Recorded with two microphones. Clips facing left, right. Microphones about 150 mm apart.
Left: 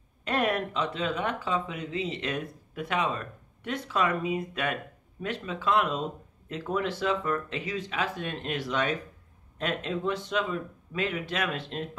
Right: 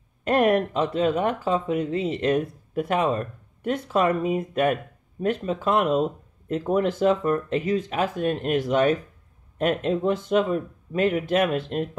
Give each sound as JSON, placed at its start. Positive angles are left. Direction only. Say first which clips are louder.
{"t": 0.2, "sound": "speech", "louder": "right 8 dB", "side_deg": -45}